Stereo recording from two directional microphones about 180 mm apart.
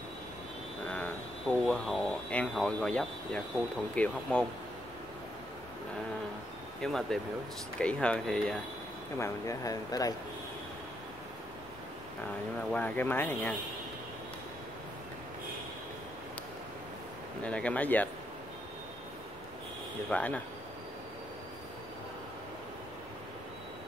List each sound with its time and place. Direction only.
0.8 s speech: 5° left (ahead or behind)
6.8 s speech: 5° left (ahead or behind)
9.2 s speech: 15° left (ahead or behind)
12.7 s speech: 10° left (ahead or behind)
17.4 s speech: 5° left (ahead or behind)
20.1 s speech: 5° left (ahead or behind)